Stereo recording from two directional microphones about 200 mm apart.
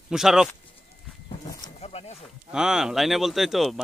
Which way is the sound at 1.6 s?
30° left (ahead or behind).